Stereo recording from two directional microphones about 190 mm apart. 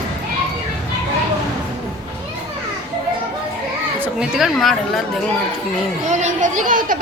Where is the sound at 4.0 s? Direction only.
Centre (ahead or behind).